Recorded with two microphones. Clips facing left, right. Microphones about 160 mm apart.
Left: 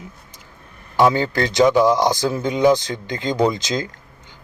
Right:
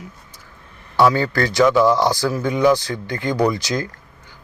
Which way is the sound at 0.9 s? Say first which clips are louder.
Even; 20° left (ahead or behind).